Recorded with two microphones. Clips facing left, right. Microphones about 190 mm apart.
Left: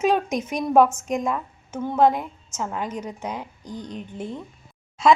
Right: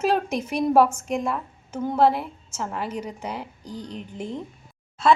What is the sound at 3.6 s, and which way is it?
Speech, 35° right (ahead or behind).